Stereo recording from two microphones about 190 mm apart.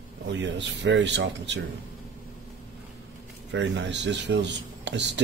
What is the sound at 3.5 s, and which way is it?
Speech, 65° right (ahead or behind).